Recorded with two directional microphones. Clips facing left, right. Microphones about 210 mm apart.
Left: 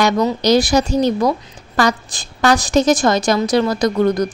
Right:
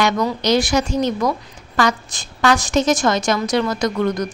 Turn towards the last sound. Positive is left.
turn(degrees=35)  # may be behind; listen again after turning